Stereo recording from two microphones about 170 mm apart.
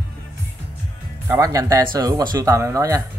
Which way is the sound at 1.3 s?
20° right (ahead or behind).